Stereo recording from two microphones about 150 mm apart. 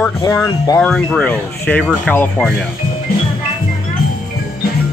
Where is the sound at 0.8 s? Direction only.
5° left (ahead or behind).